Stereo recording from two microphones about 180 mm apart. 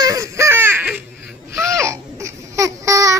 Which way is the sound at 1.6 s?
15° right (ahead or behind).